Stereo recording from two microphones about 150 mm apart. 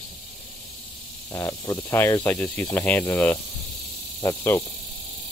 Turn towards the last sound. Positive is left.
turn(degrees=20)  # may be behind; listen again after turning